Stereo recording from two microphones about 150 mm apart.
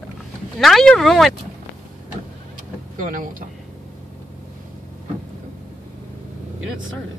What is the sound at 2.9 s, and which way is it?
Speech, 60° right (ahead or behind).